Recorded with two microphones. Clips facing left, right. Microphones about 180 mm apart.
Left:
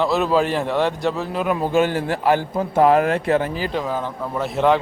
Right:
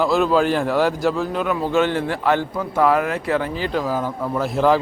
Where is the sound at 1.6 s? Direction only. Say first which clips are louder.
Left 1 dB; 15° left (ahead or behind).